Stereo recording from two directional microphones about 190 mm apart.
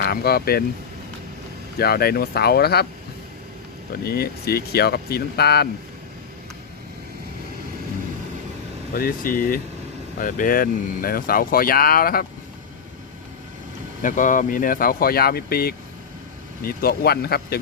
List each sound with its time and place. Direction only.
0.0 s speech: 55° left (ahead or behind)
1.8 s speech: 55° left (ahead or behind)
4.0 s speech: 55° left (ahead or behind)
8.9 s speech: 50° left (ahead or behind)
14.0 s speech: 40° left (ahead or behind)